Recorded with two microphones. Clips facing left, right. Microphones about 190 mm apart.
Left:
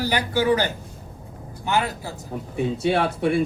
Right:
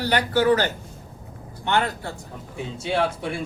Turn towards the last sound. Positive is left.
turn(degrees=60)  # may be behind; listen again after turning